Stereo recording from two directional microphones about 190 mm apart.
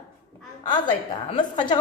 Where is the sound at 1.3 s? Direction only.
25° left (ahead or behind).